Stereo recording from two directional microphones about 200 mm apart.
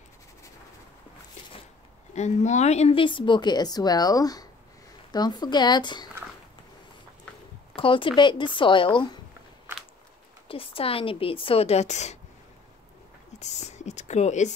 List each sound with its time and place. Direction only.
2.1 s a woman's voice: 35° left (ahead or behind)
7.7 s a woman's voice: 25° left (ahead or behind)
10.5 s a woman's voice: 30° left (ahead or behind)
13.4 s speech: 35° left (ahead or behind)